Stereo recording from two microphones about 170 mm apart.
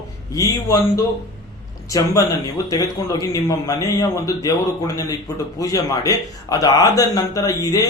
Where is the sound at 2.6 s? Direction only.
20° left (ahead or behind).